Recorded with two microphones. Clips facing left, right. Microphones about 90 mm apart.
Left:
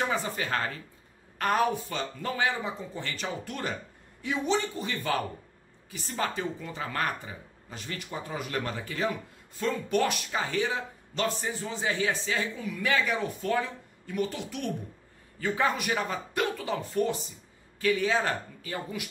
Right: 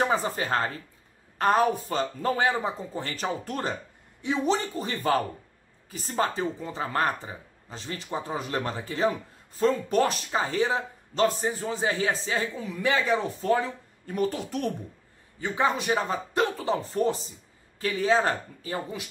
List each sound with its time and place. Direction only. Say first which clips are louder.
0.0 s speech: right 4 dB; 35° right (ahead or behind)
15.4 s speech: right 2 dB; 20° right (ahead or behind)